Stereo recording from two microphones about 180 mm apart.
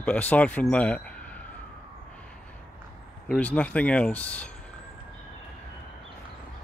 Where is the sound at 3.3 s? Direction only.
5° left (ahead or behind).